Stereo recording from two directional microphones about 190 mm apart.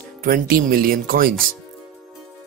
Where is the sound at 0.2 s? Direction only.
50° right (ahead or behind).